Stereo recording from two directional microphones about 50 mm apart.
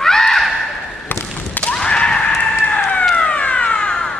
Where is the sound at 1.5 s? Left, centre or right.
Left.